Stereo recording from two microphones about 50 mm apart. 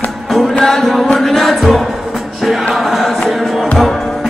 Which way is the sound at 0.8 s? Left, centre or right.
Centre.